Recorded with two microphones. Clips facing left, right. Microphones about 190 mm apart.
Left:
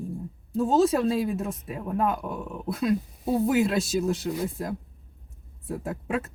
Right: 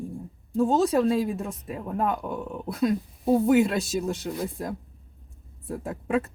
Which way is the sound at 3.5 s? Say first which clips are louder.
Right 2 dB; centre (ahead or behind).